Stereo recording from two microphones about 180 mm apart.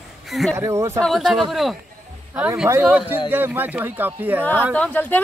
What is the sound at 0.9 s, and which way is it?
Speech, centre (ahead or behind).